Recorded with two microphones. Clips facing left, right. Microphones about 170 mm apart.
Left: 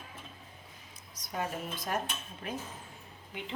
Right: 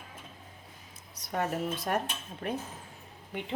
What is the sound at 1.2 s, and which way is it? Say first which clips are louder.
Speech: right 5 dB; 65° right (ahead or behind).